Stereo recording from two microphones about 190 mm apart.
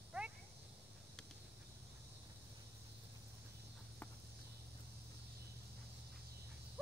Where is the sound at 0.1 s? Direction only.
10° right (ahead or behind).